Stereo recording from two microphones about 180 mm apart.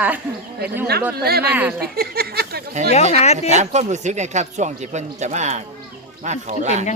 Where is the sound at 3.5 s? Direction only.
40° right (ahead or behind).